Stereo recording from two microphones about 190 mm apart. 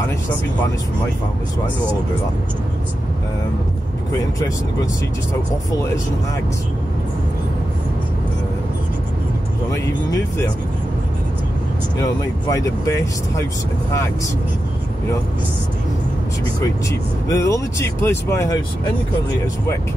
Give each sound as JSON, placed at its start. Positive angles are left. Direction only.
{"t": 12.0, "sound": "speech", "side_deg": 15}
{"t": 17.3, "sound": "speech", "side_deg": 15}